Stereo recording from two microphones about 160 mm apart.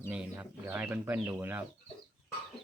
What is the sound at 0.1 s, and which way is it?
Speech, 10° right (ahead or behind).